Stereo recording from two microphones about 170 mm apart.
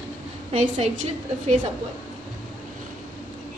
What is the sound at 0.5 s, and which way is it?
Speech, 40° right (ahead or behind).